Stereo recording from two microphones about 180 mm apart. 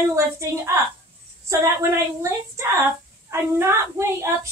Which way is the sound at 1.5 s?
15° right (ahead or behind).